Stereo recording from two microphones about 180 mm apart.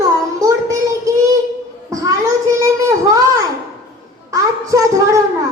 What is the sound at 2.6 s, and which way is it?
Child singing, 15° right (ahead or behind).